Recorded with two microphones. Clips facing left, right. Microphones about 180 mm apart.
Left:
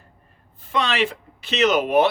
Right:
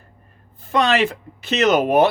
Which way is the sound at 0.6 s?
45° right (ahead or behind).